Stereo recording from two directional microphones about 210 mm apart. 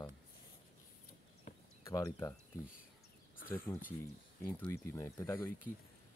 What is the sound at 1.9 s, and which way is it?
Speech, 15° left (ahead or behind).